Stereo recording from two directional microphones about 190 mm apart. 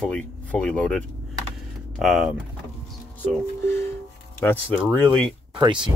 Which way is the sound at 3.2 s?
10° left (ahead or behind).